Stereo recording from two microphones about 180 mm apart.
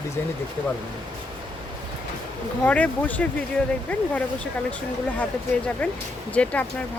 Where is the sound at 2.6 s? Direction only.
10° left (ahead or behind).